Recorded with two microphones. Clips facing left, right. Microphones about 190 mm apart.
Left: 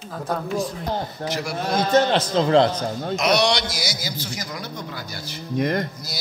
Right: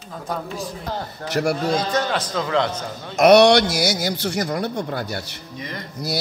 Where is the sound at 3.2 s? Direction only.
60° right (ahead or behind).